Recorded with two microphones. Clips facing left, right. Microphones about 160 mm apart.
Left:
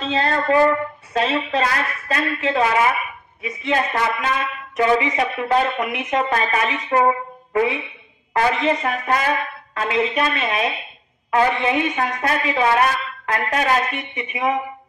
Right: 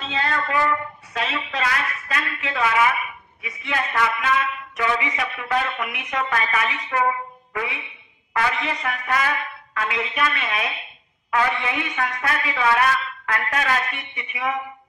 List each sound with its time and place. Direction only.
0.0 s a woman's voice: 35° left (ahead or behind)